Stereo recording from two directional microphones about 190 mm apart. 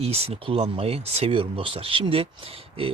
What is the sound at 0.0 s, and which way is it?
Speech, 30° right (ahead or behind).